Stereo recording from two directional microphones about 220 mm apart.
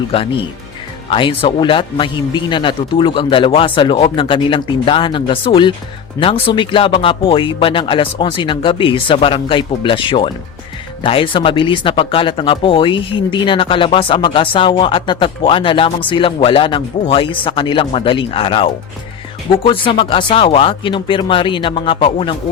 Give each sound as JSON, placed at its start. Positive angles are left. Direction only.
{"t": 0.1, "sound": "speech", "side_deg": 25}